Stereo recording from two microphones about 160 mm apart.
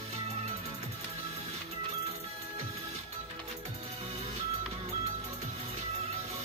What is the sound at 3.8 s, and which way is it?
Music, 40° right (ahead or behind).